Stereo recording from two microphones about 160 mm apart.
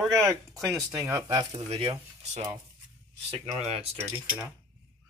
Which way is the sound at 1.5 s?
35° right (ahead or behind).